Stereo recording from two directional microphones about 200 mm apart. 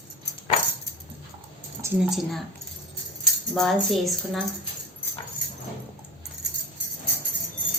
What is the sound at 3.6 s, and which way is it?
Speech, centre (ahead or behind).